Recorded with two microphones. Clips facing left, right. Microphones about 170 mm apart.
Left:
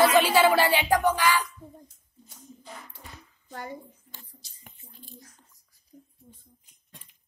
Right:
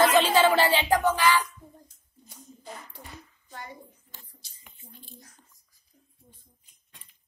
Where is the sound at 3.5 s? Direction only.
50° left (ahead or behind).